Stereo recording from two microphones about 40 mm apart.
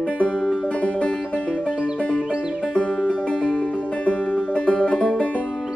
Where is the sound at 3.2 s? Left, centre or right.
Left.